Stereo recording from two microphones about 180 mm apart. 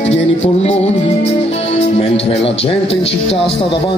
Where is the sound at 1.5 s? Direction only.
35° left (ahead or behind).